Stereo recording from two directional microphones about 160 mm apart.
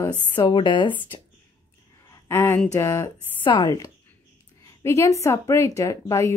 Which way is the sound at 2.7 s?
15° left (ahead or behind).